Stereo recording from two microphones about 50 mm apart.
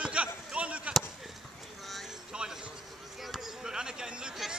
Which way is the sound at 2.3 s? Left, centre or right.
Centre.